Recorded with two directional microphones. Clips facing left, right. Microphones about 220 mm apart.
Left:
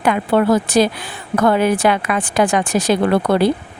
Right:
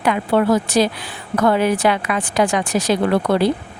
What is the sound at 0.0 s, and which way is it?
Speech, 50° left (ahead or behind).